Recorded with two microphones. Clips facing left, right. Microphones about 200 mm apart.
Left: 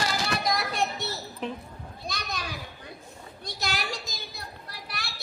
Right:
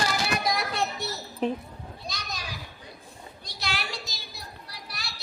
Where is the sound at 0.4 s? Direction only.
Centre (ahead or behind).